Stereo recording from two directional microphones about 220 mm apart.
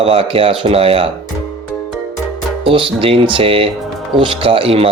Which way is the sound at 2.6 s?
25° right (ahead or behind).